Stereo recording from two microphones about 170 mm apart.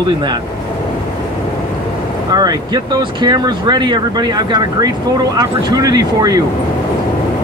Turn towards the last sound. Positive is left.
turn(degrees=-20)  # may be behind; listen again after turning